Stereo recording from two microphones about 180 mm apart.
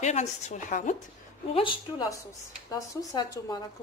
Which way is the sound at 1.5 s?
30° left (ahead or behind).